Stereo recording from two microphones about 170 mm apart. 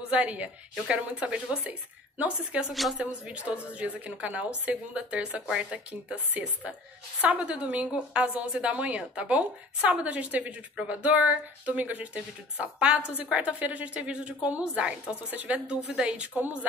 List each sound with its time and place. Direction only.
0.1 s speech: 5° right (ahead or behind)